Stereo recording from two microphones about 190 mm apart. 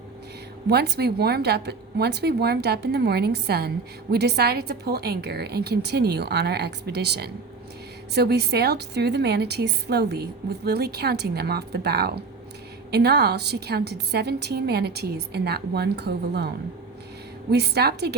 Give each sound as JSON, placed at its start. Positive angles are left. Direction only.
{"t": 0.7, "sound": "a woman's voice", "side_deg": -55}
{"t": 17.5, "sound": "a woman's voice", "side_deg": -60}